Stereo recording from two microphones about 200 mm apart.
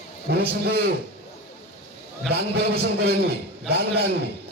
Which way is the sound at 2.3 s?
50° right (ahead or behind).